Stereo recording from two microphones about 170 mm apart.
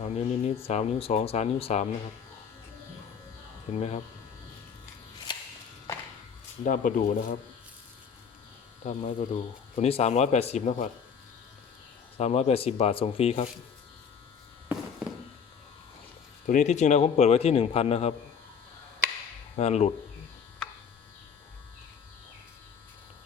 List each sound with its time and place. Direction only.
0.0 s speech: 40° left (ahead or behind)
3.7 s speech: 40° left (ahead or behind)
6.7 s speech: 50° left (ahead or behind)
8.8 s speech: 40° left (ahead or behind)
12.1 s speech: 40° left (ahead or behind)
16.5 s speech: 45° left (ahead or behind)
19.5 s speech: 40° left (ahead or behind)